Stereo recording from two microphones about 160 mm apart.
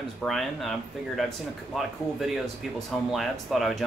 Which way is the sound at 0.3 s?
Centre (ahead or behind).